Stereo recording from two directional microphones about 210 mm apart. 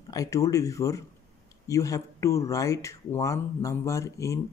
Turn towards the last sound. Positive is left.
turn(degrees=15)  # may be behind; listen again after turning